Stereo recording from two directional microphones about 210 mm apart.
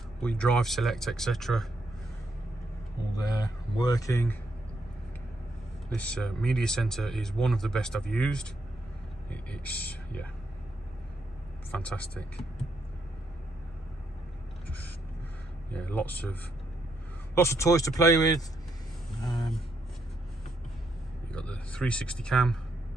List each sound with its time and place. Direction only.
0.2 s speech: 5° left (ahead or behind)
3.7 s speech: 20° left (ahead or behind)
5.9 s speech: 5° left (ahead or behind)
11.7 s speech: 5° left (ahead or behind)
15.7 s speech: 5° left (ahead or behind)
17.4 s speech: 15° left (ahead or behind)
21.3 s speech: 5° left (ahead or behind)